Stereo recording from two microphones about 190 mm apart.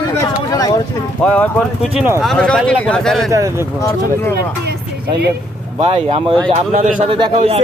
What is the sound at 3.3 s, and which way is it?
Speech, 15° right (ahead or behind).